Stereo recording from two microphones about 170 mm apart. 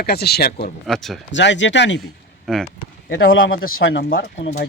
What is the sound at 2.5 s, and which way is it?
Speech, centre (ahead or behind).